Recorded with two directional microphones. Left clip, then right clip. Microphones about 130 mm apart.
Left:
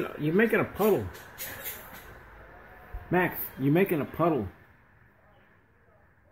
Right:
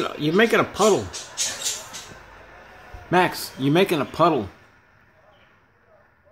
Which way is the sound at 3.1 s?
25° right (ahead or behind).